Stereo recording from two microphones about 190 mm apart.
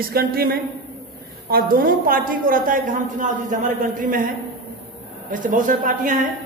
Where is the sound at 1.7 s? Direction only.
50° right (ahead or behind).